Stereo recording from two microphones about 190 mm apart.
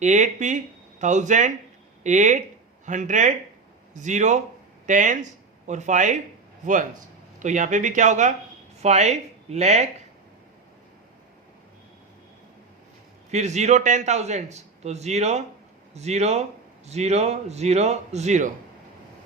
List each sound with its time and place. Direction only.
0.0 s a man's voice: 40° right (ahead or behind)
7.3 s a man's voice: 40° right (ahead or behind)
13.3 s a man's voice: 35° right (ahead or behind)